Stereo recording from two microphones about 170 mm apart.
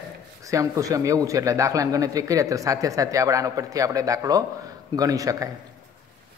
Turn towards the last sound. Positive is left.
turn(degrees=-20)  # may be behind; listen again after turning